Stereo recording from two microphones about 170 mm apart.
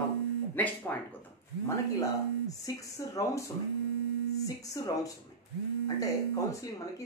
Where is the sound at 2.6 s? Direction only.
20° left (ahead or behind).